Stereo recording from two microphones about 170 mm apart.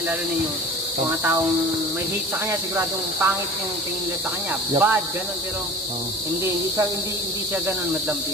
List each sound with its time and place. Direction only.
1.0 s speech: 20° right (ahead or behind)
2.7 s speech: 15° right (ahead or behind)
4.7 s speech: 15° right (ahead or behind)